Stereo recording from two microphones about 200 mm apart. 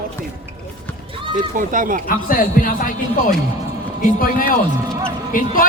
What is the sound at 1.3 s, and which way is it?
Speech, 40° right (ahead or behind).